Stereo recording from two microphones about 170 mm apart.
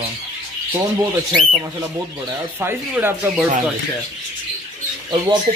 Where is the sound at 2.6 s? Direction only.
15° right (ahead or behind).